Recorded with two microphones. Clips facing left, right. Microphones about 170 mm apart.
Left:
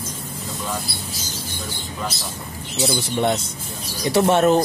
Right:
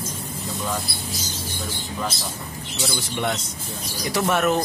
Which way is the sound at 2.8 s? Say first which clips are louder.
Left 6 dB; 30° left (ahead or behind).